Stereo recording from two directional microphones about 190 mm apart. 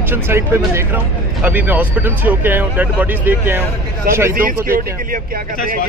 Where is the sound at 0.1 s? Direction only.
10° right (ahead or behind).